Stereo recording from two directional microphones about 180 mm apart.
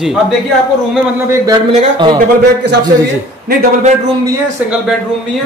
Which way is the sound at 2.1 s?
65° right (ahead or behind).